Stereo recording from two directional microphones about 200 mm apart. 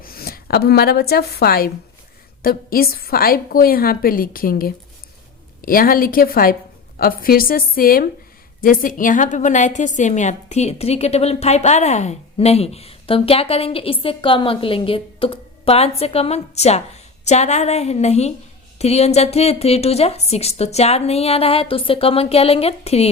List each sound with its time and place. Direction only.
0.0 s a woman's voice: 50° left (ahead or behind); by 23.0 s 30° left (ahead or behind)